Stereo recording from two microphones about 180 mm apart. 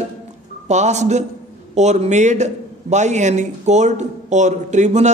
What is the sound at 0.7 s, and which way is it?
A man's voice, 40° right (ahead or behind).